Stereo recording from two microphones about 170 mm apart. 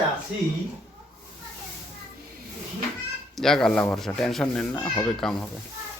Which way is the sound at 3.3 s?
Centre (ahead or behind).